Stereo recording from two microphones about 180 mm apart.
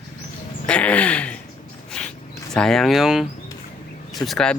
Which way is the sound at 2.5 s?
5° left (ahead or behind).